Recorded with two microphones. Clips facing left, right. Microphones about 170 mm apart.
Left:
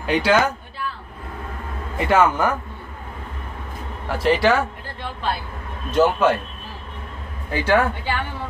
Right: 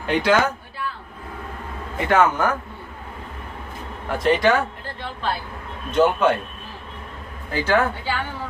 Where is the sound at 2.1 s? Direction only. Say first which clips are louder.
Left 1 dB; 10° left (ahead or behind).